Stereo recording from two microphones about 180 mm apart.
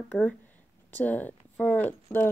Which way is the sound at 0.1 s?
5° left (ahead or behind).